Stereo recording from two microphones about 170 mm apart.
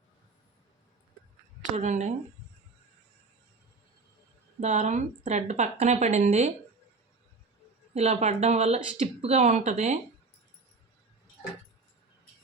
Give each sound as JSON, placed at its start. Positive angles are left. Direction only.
{"t": 1.7, "sound": "a woman's voice", "side_deg": -45}
{"t": 4.6, "sound": "a woman's voice", "side_deg": -45}
{"t": 7.9, "sound": "speech", "side_deg": -40}